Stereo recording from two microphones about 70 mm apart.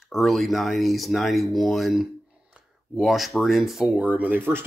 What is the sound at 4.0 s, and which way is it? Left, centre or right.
Speech, right.